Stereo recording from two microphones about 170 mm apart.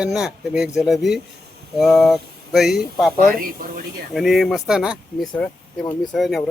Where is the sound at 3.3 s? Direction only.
55° right (ahead or behind).